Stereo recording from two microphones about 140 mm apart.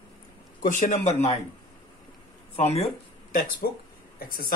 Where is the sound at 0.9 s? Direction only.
50° left (ahead or behind).